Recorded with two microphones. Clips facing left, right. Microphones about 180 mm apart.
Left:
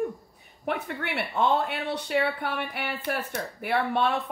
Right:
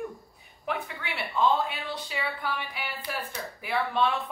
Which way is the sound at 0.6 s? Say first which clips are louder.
Left 3 dB; 60° left (ahead or behind).